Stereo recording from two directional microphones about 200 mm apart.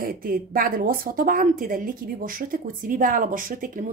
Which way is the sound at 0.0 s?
45° right (ahead or behind).